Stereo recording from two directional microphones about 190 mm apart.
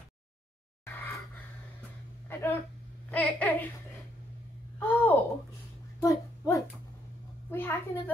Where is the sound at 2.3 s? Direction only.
10° left (ahead or behind).